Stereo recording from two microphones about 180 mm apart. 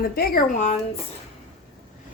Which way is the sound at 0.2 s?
50° left (ahead or behind).